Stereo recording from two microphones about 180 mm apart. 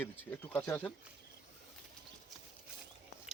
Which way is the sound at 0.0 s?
10° left (ahead or behind).